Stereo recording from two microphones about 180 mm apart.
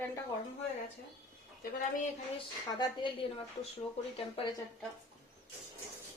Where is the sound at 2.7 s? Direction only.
25° left (ahead or behind).